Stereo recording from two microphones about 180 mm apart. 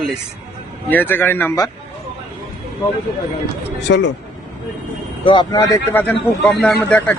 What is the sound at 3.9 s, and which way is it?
Speech, 85° left.